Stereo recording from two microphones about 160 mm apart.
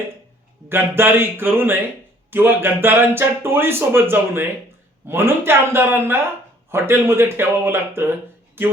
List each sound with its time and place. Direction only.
0.7 s speech: 15° right (ahead or behind)